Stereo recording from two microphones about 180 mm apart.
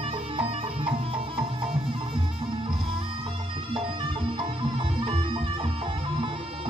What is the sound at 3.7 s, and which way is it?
Music, 30° right (ahead or behind).